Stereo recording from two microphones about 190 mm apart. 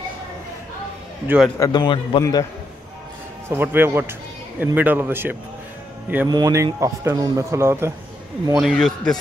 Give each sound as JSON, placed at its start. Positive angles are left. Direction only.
{"t": 1.2, "sound": "a man's voice", "side_deg": -10}
{"t": 1.6, "sound": "a man's voice", "side_deg": 25}
{"t": 3.4, "sound": "a man's voice", "side_deg": -10}
{"t": 8.5, "sound": "a man's voice", "side_deg": 0}